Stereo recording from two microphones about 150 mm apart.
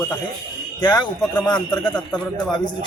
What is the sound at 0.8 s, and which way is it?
Speech, 30° left (ahead or behind).